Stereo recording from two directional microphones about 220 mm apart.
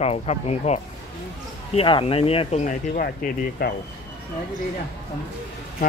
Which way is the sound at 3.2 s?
40° left (ahead or behind).